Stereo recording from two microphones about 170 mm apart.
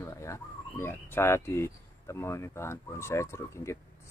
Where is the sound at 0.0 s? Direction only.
15° left (ahead or behind).